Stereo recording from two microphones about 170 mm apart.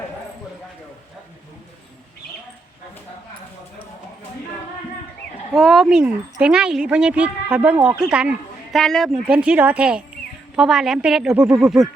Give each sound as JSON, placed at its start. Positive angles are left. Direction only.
{"t": 5.5, "sound": "a woman's voice", "side_deg": 0}